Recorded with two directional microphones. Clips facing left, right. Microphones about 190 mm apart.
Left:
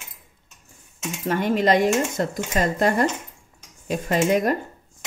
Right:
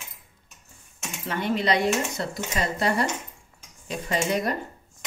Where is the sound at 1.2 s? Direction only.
45° left (ahead or behind).